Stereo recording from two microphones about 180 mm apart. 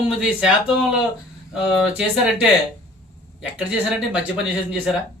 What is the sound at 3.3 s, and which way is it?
Speech, 5° right (ahead or behind).